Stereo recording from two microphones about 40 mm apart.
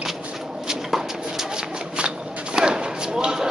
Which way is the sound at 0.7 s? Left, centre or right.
Centre.